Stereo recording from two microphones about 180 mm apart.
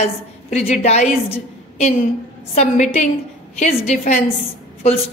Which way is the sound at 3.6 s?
40° left (ahead or behind).